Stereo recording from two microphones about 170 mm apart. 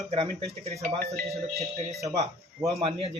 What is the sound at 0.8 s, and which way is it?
Speech, 60° right (ahead or behind).